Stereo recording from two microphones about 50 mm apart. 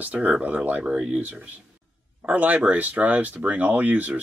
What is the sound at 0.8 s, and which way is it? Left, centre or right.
Speech, right.